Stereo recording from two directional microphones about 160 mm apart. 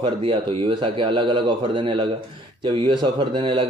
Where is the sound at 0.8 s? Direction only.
30° right (ahead or behind).